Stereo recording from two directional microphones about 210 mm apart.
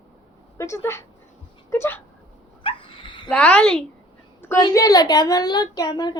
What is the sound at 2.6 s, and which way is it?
Dog, 25° left (ahead or behind).